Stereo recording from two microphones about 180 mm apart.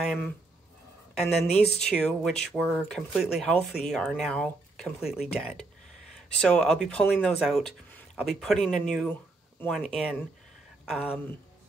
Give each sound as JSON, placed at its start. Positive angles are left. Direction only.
{"t": 0.0, "sound": "speech", "side_deg": 0}
{"t": 1.8, "sound": "speech", "side_deg": 5}